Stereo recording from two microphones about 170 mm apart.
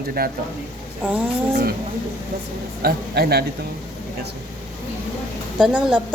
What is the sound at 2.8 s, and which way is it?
Speech, 65° right (ahead or behind).